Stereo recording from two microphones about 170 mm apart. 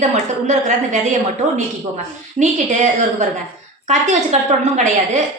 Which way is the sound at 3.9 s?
45° right (ahead or behind).